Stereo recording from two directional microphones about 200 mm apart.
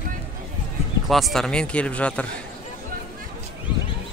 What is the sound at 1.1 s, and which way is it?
Speech, centre (ahead or behind).